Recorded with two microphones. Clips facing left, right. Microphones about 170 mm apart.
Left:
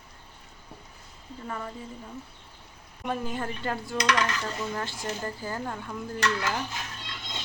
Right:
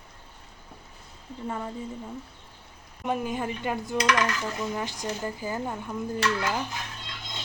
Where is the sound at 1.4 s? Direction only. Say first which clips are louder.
Right 3 dB; 20° right (ahead or behind).